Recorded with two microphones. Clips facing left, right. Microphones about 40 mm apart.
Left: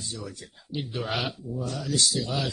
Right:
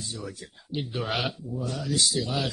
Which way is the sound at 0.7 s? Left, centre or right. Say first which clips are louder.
Right 1 dB; centre.